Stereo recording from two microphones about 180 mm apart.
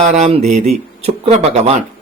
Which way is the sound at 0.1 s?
40° right (ahead or behind).